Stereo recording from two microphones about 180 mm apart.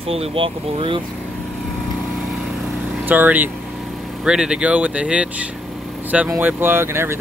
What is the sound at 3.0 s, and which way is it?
Speech, 10° right (ahead or behind).